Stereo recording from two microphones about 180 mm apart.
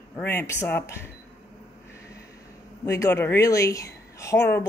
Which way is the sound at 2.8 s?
15° left (ahead or behind).